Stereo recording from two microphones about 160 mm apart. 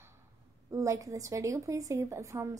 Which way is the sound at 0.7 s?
20° right (ahead or behind).